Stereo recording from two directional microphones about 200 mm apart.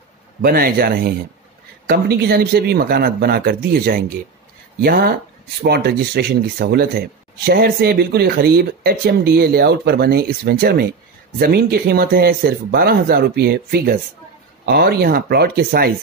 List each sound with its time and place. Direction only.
0.4 s speech: 50° right (ahead or behind)